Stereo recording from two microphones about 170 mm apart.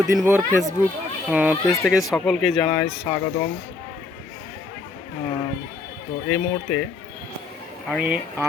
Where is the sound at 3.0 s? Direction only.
20° left (ahead or behind).